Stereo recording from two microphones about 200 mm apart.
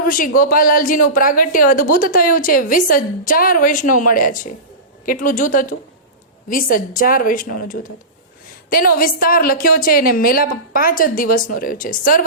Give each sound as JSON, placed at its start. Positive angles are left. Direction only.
{"t": 0.3, "sound": "a woman's voice", "side_deg": 45}